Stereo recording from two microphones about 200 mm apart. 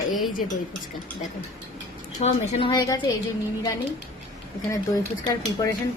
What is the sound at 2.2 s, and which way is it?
Speech, 30° left (ahead or behind).